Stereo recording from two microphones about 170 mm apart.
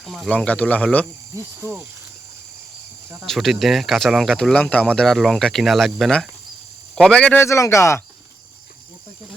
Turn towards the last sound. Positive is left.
turn(degrees=15)  # may be behind; listen again after turning